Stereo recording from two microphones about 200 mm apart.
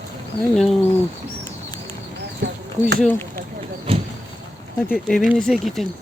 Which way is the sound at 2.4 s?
60° right (ahead or behind).